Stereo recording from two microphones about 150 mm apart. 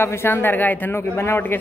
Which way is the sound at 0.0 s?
15° left (ahead or behind).